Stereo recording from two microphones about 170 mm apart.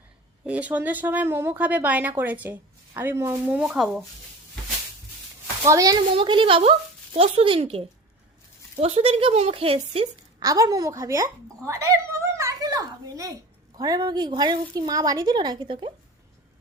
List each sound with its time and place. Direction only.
0.4 s a woman's voice: 10° right (ahead or behind)
5.6 s speech: 20° right (ahead or behind)
6.1 s speech: 30° right (ahead or behind)
10.4 s speech: 20° right (ahead or behind)